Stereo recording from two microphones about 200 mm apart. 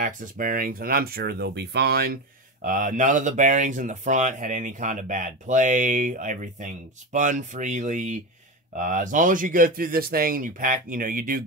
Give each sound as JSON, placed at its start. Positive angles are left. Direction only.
{"t": 0.0, "sound": "a man's voice", "side_deg": -45}
{"t": 2.6, "sound": "a man's voice", "side_deg": -40}